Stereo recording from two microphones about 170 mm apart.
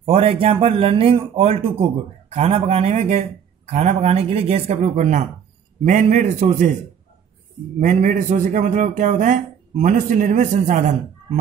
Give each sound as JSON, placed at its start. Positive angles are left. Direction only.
{"t": 0.0, "sound": "a man's voice", "side_deg": -35}
{"t": 7.8, "sound": "a man's voice", "side_deg": -50}